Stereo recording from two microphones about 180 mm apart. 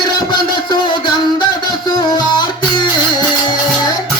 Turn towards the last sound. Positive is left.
turn(degrees=25)  # may be behind; listen again after turning